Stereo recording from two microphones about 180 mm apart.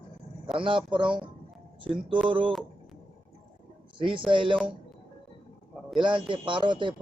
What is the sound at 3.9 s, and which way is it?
Speech, 30° right (ahead or behind).